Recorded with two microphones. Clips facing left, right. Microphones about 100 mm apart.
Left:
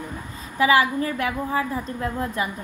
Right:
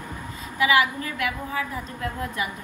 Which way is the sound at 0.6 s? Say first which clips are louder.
Left 3 dB; 35° left (ahead or behind).